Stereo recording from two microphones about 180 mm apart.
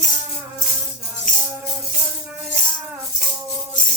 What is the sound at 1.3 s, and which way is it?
Music, 45° left (ahead or behind).